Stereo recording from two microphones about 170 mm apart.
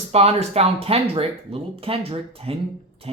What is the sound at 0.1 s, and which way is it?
Speech, 40° right (ahead or behind).